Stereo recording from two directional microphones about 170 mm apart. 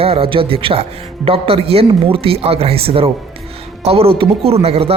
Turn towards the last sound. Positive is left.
turn(degrees=-35)  # may be behind; listen again after turning